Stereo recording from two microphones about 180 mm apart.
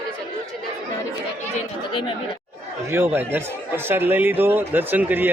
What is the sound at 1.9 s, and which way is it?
Speech, 30° left (ahead or behind).